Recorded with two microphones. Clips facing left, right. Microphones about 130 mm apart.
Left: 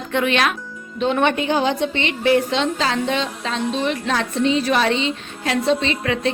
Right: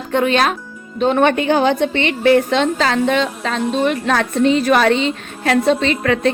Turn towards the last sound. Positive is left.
turn(degrees=-55)  # may be behind; listen again after turning